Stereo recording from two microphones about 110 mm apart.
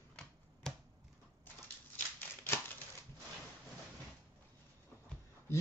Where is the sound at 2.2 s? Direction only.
20° left (ahead or behind).